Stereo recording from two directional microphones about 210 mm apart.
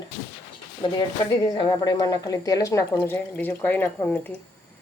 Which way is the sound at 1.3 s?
20° left (ahead or behind).